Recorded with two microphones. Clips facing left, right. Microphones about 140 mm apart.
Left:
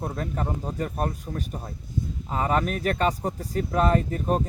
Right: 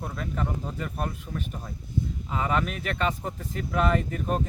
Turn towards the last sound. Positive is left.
turn(degrees=35)  # may be behind; listen again after turning